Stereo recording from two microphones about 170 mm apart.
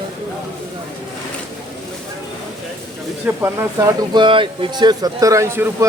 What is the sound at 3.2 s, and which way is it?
Speech, 15° right (ahead or behind).